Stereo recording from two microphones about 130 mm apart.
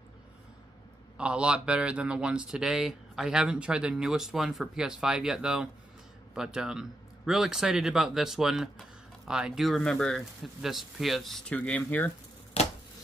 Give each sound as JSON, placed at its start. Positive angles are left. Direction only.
{"t": 1.1, "sound": "speech", "side_deg": -10}